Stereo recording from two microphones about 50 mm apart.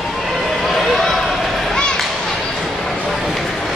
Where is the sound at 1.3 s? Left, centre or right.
Centre.